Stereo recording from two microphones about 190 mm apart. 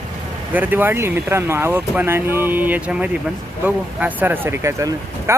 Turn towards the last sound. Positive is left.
turn(degrees=-15)  # may be behind; listen again after turning